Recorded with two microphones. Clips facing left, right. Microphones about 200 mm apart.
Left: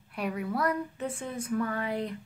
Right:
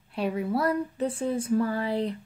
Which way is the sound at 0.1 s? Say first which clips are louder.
Right 5 dB; 30° right (ahead or behind).